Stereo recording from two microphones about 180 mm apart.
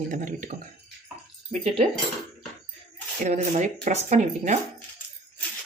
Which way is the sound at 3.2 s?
45° right (ahead or behind).